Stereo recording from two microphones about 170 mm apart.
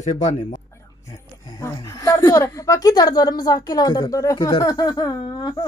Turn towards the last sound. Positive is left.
turn(degrees=25)  # may be behind; listen again after turning